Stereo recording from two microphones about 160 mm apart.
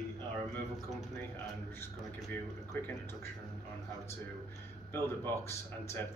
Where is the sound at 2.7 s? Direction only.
10° left (ahead or behind).